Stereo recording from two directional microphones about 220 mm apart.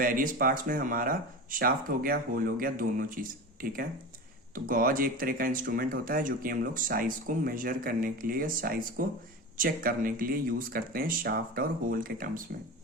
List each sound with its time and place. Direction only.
0.0 s speech: 40° right (ahead or behind)